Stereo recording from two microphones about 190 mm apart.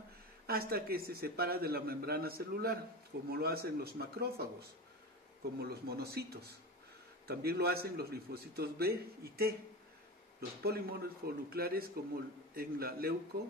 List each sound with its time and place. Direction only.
0.5 s a man's voice: 55° right (ahead or behind)
10.6 s a man's voice: 55° right (ahead or behind)